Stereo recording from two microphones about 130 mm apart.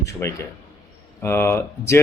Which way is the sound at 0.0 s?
20° left (ahead or behind).